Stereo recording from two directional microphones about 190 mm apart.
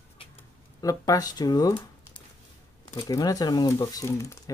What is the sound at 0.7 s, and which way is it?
Speech, 20° left (ahead or behind).